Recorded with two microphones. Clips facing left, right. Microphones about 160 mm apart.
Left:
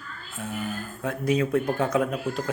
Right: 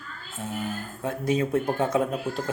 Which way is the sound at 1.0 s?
25° right (ahead or behind).